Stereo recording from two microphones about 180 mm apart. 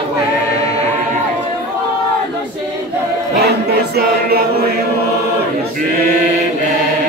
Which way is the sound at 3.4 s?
65° right (ahead or behind).